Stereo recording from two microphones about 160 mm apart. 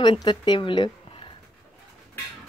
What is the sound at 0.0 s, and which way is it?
Speech, 30° left (ahead or behind).